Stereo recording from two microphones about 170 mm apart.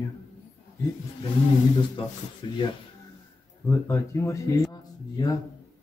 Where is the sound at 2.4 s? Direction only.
25° left (ahead or behind).